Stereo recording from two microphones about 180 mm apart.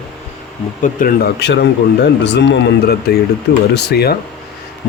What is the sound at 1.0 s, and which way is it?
Speech, 50° left (ahead or behind).